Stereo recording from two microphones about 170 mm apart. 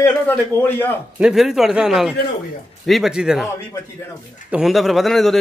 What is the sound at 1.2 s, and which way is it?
A man's voice, centre (ahead or behind).